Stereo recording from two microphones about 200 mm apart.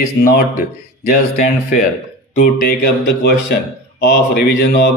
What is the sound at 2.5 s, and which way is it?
Speech, 50° left (ahead or behind).